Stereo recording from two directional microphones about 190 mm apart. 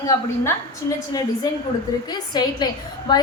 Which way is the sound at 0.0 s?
15° left (ahead or behind).